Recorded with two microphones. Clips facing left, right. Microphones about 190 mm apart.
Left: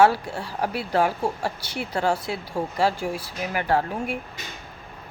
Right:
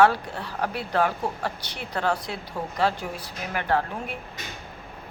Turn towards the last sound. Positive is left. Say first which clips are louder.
# left 2 dB
turn(degrees=10)  # may be behind; listen again after turning